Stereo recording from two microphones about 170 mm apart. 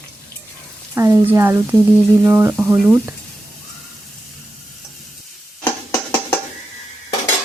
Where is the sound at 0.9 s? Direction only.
15° right (ahead or behind).